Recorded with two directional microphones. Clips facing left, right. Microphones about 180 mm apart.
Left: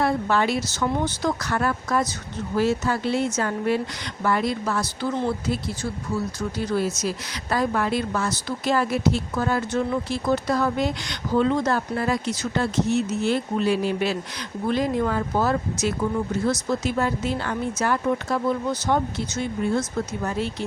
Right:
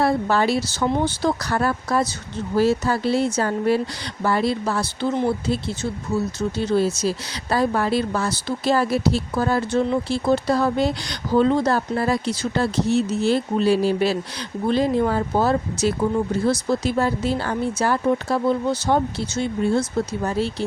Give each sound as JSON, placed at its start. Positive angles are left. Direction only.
{"t": 0.0, "sound": "speech", "side_deg": -35}